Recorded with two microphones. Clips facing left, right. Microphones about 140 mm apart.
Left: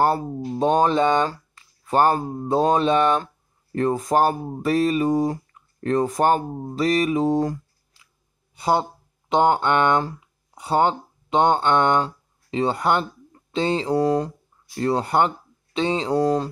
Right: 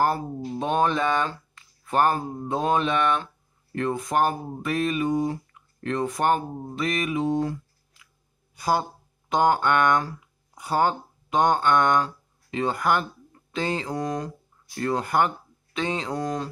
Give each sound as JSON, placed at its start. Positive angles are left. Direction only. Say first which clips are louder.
{"t": 0.6, "sound": "speech", "louder": "left 5 dB", "side_deg": 35}
{"t": 8.5, "sound": "speech", "louder": "left 3 dB", "side_deg": 25}